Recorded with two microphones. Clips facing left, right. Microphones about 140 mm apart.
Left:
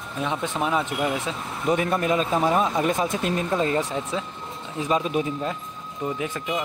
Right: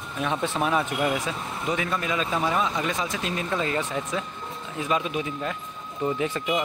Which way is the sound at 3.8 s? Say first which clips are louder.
Left 1 dB; 10° left (ahead or behind).